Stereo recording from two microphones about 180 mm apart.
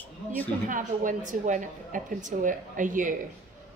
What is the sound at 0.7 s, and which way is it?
A woman's voice, 45° right (ahead or behind).